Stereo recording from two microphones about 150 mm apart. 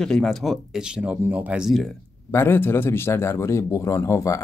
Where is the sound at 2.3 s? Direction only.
15° left (ahead or behind).